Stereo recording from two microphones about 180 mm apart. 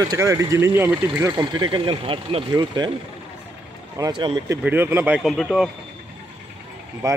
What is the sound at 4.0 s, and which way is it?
Speech, 20° right (ahead or behind).